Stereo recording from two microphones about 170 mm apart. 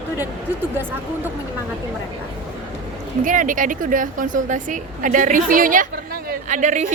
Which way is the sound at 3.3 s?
50° right (ahead or behind).